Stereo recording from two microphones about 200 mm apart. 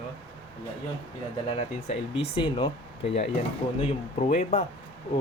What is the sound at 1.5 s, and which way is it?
Speech, 30° left (ahead or behind).